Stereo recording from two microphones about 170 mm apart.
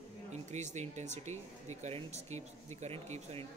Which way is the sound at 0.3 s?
45° right (ahead or behind).